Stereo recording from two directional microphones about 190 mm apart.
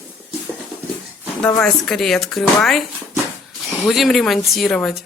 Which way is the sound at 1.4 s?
5° left (ahead or behind).